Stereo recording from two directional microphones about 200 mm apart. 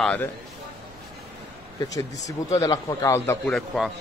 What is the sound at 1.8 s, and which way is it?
Speech, 15° left (ahead or behind).